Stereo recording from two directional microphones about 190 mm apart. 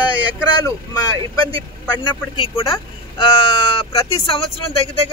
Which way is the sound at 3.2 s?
30° left (ahead or behind).